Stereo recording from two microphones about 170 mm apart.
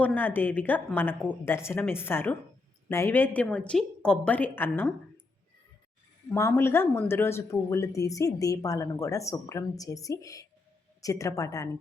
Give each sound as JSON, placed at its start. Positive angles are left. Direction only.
{"t": 0.0, "sound": "a woman's voice", "side_deg": 10}
{"t": 6.3, "sound": "speech", "side_deg": 15}